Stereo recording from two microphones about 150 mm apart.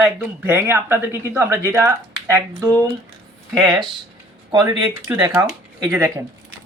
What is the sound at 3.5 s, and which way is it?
Speech, 25° right (ahead or behind).